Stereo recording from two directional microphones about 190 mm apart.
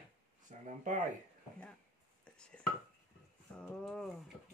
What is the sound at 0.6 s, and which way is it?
Speech, 45° right (ahead or behind).